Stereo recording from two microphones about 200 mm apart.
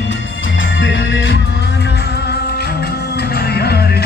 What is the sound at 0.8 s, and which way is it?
Music, 65° left (ahead or behind).